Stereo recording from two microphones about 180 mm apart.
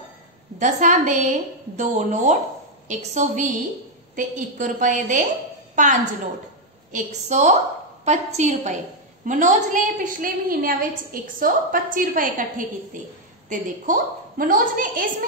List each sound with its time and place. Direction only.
0.6 s a woman's voice: 45° right (ahead or behind)